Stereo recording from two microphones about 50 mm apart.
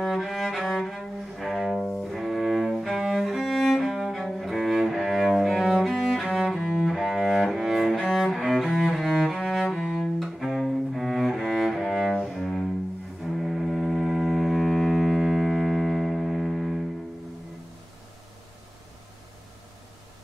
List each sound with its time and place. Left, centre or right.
0.0 s cello: centre
2.1 s cello: centre
7.5 s cello: centre
13.2 s music: centre